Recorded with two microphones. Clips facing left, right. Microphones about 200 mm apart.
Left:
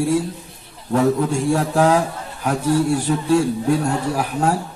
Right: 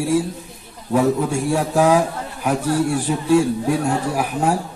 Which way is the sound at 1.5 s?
10° right (ahead or behind).